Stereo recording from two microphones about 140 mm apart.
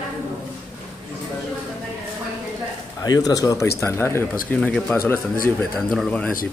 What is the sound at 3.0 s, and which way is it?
Speech, 25° left (ahead or behind).